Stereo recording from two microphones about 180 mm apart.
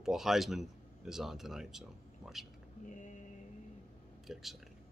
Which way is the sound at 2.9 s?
40° left (ahead or behind).